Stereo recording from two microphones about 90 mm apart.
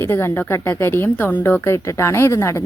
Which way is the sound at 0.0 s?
25° left (ahead or behind).